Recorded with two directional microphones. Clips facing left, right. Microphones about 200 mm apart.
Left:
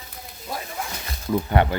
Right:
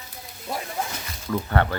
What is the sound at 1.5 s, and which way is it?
Speech, 15° left (ahead or behind).